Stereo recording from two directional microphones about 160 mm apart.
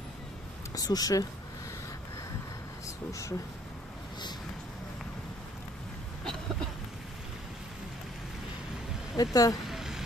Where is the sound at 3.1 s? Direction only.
20° left (ahead or behind).